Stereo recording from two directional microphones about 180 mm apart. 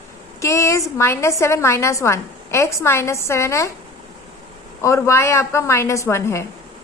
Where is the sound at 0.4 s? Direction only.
15° left (ahead or behind).